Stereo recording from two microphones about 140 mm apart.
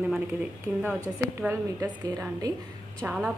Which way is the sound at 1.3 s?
15° right (ahead or behind).